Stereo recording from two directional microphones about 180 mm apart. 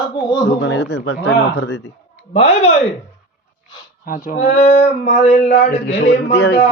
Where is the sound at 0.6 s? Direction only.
75° left (ahead or behind).